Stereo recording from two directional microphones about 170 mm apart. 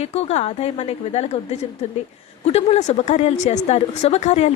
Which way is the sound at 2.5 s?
40° left (ahead or behind).